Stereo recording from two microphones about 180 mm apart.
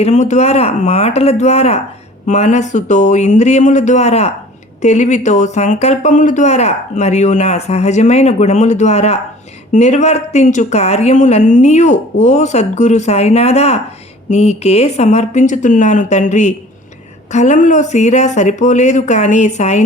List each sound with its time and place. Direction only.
0.0 s speech: 40° left (ahead or behind)